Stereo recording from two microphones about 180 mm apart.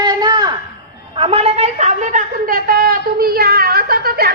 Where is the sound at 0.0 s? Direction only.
25° right (ahead or behind).